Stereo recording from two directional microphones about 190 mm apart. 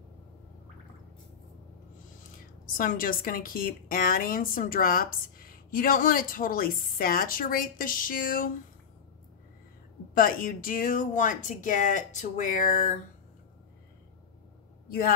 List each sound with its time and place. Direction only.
2.6 s a woman's voice: 45° left (ahead or behind)
10.1 s a woman's voice: 45° left (ahead or behind)